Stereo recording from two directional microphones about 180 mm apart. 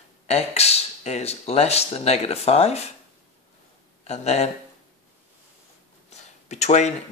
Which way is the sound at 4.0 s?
35° left (ahead or behind).